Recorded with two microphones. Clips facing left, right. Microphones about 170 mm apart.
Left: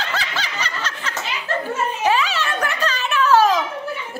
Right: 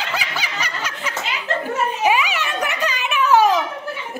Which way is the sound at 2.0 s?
15° right (ahead or behind).